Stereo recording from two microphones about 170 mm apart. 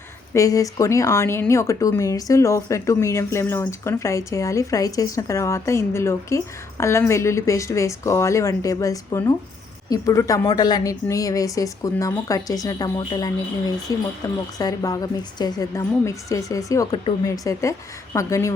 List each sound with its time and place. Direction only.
0.3 s a woman's voice: 20° left (ahead or behind)